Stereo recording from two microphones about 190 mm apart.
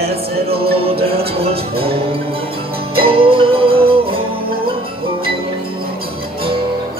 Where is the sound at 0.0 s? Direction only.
30° right (ahead or behind).